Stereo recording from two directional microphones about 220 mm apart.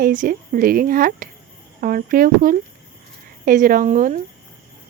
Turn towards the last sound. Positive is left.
turn(degrees=-40)  # may be behind; listen again after turning